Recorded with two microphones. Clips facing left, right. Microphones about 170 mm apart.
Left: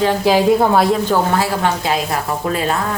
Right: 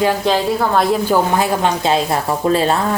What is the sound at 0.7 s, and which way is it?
Speech, centre (ahead or behind).